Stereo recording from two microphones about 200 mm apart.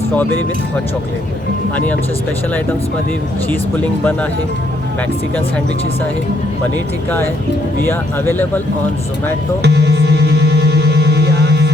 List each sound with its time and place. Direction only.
1.7 s speech: 10° left (ahead or behind)
3.5 s speech: 10° left (ahead or behind)
9.6 s music: 55° right (ahead or behind)